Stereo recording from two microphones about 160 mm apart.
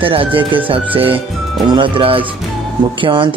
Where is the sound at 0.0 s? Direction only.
35° right (ahead or behind).